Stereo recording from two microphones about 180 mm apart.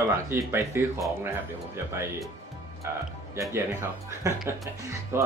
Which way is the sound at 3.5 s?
15° right (ahead or behind).